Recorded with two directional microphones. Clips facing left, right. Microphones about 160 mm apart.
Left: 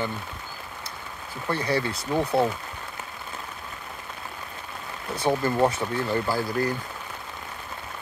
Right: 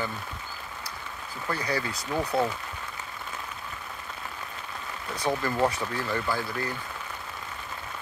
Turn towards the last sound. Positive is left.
turn(degrees=35)  # may be behind; listen again after turning